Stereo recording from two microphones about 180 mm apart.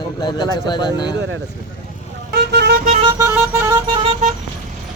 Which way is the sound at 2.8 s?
35° right (ahead or behind).